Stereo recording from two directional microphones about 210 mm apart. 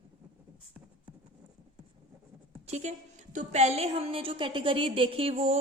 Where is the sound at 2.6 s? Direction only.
30° right (ahead or behind).